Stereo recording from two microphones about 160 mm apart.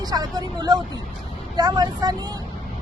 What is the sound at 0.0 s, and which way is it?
Speech, 25° right (ahead or behind).